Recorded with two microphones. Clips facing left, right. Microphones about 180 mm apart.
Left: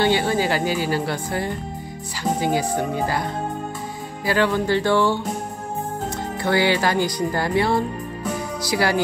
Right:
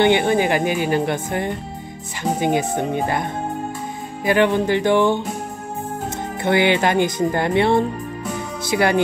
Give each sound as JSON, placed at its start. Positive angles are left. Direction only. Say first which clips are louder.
{"t": 0.0, "sound": "speech", "louder": "right 4 dB", "side_deg": -20}
{"t": 6.4, "sound": "speech", "louder": "right 3 dB", "side_deg": -20}